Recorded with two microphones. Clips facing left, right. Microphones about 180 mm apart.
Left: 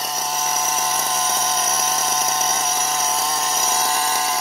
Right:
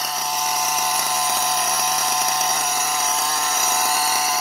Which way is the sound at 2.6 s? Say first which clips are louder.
Left 1 dB; 20° left (ahead or behind).